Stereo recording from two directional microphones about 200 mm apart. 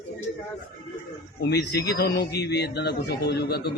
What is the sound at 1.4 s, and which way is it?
A man's voice, 55° left (ahead or behind).